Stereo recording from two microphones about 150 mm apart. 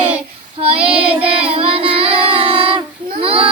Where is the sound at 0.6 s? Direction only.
40° right (ahead or behind).